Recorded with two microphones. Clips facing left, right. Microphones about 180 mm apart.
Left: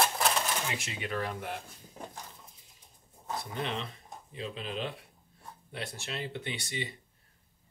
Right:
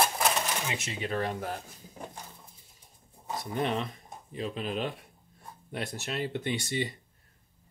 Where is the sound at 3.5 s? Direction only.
50° right (ahead or behind).